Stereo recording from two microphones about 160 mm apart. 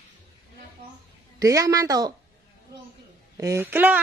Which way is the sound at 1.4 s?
20° right (ahead or behind).